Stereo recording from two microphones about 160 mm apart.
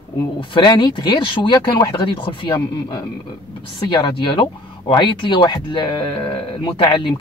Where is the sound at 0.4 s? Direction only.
30° left (ahead or behind).